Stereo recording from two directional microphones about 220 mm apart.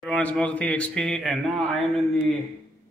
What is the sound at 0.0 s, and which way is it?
Speech, 5° left (ahead or behind).